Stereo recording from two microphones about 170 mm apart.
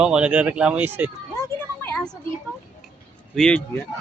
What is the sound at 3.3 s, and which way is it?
Speech, 5° left (ahead or behind).